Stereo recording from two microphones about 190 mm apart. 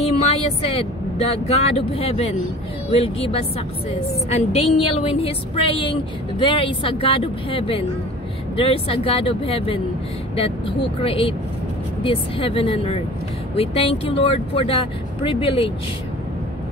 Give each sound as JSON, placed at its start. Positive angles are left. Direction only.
{"t": 0.0, "sound": "a woman's voice", "side_deg": 30}